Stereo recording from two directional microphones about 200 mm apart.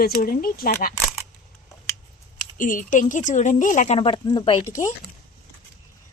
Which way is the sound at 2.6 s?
40° left (ahead or behind).